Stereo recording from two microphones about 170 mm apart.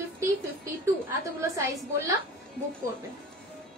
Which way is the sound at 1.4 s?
15° right (ahead or behind).